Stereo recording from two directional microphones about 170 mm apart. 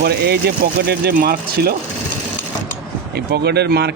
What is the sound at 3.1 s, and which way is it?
Speech, 75° right (ahead or behind).